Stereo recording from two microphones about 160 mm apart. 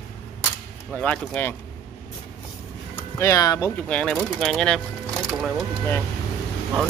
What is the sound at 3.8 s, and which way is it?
Speech, 5° left (ahead or behind).